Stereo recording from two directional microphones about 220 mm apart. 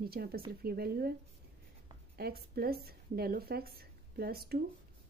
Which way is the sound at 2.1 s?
45° right (ahead or behind).